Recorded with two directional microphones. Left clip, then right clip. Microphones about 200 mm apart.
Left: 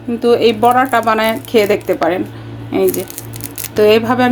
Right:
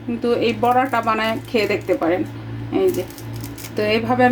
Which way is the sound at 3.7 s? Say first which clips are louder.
Left 8 dB; 45° left (ahead or behind).